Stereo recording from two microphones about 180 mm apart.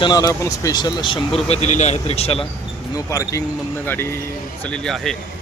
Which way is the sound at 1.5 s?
40° left (ahead or behind).